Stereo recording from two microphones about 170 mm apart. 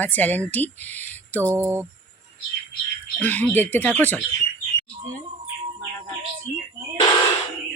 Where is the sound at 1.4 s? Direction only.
15° right (ahead or behind).